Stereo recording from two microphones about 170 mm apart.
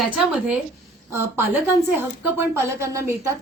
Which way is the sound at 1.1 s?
15° right (ahead or behind).